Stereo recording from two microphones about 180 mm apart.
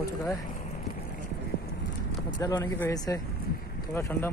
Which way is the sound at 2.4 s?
15° left (ahead or behind).